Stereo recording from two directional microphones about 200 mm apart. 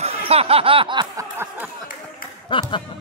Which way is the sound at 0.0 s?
30° right (ahead or behind).